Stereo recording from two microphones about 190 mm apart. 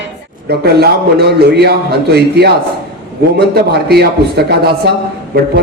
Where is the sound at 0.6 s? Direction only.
55° right (ahead or behind).